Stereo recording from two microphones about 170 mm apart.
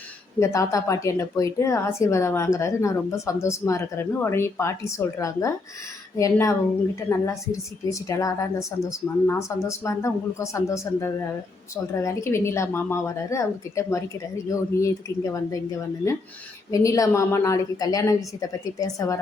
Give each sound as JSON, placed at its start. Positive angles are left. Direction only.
{"t": 0.3, "sound": "a woman's voice", "side_deg": 20}
{"t": 16.7, "sound": "a woman's voice", "side_deg": 20}